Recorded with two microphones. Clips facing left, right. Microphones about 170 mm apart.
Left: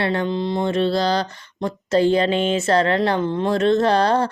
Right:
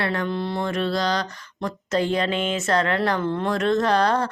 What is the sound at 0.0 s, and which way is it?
Mantra, 25° left (ahead or behind).